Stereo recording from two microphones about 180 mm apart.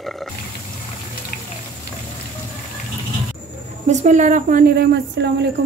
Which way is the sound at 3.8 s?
45° right (ahead or behind).